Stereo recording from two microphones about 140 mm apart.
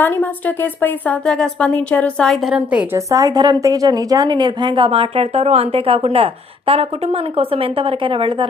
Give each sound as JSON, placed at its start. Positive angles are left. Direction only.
{"t": 0.0, "sound": "speech", "side_deg": 15}
{"t": 3.1, "sound": "a woman's voice", "side_deg": -25}